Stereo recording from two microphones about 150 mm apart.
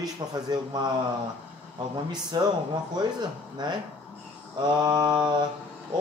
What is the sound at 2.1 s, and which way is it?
Speech, 25° right (ahead or behind).